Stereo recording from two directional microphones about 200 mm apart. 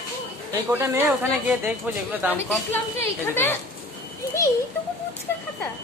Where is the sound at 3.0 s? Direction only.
10° left (ahead or behind).